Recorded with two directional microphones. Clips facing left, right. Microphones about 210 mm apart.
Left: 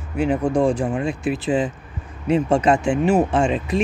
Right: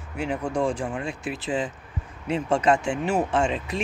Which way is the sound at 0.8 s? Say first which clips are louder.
Left 8 dB; 20° left (ahead or behind).